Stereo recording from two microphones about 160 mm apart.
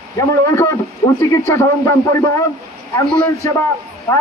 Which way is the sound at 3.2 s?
15° left (ahead or behind).